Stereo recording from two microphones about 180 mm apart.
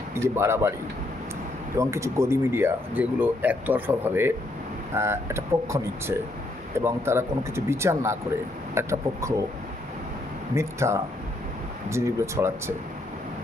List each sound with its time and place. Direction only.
0.1 s speech: 15° right (ahead or behind)
1.7 s speech: 15° right (ahead or behind)
10.5 s speech: 15° right (ahead or behind)